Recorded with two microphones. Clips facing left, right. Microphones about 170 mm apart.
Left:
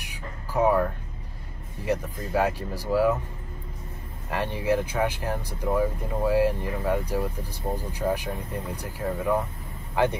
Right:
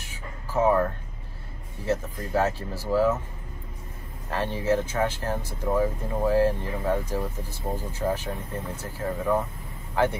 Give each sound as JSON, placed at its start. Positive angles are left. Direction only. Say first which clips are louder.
{"t": 0.0, "sound": "music", "louder": "left 1 dB", "side_deg": 15}
{"t": 1.9, "sound": "speech", "louder": "even", "side_deg": 15}
{"t": 4.3, "sound": "speech", "louder": "even", "side_deg": 15}